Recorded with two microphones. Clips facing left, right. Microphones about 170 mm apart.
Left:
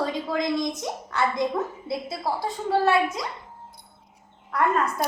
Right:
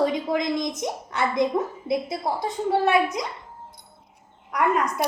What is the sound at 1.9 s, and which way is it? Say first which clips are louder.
A woman's voice: right 5 dB; 20° right (ahead or behind).